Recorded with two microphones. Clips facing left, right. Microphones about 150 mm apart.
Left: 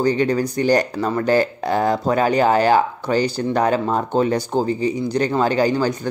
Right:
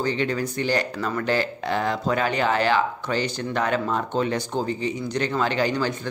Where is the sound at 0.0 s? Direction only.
40° left (ahead or behind).